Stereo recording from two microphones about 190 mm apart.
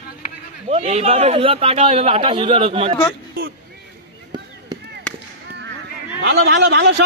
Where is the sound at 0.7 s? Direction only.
35° right (ahead or behind).